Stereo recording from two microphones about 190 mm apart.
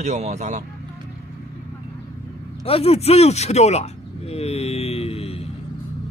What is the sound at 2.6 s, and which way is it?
Speech, 30° left (ahead or behind).